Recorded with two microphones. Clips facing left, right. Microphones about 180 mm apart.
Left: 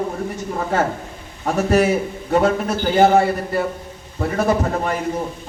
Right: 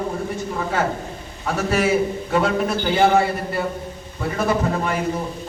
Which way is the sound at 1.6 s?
45° left (ahead or behind).